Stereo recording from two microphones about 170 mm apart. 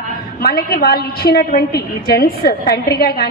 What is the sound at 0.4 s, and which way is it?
A woman's voice, 65° left (ahead or behind).